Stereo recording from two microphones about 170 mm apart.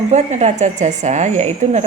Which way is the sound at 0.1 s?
40° right (ahead or behind).